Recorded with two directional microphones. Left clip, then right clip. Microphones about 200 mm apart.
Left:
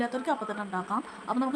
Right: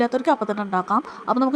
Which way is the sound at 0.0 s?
40° right (ahead or behind).